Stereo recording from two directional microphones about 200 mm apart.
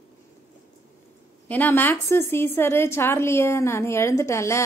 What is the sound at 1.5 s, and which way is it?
A woman's voice, 10° left (ahead or behind).